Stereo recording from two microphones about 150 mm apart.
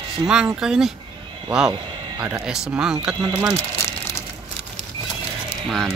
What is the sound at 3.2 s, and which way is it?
Speech, 30° right (ahead or behind).